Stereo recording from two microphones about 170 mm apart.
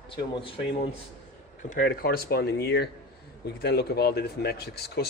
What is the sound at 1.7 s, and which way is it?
Speech, 55° left (ahead or behind).